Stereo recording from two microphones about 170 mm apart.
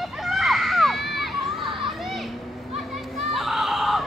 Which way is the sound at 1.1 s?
Centre (ahead or behind).